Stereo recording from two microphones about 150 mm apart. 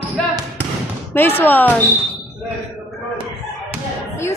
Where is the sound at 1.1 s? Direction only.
15° left (ahead or behind).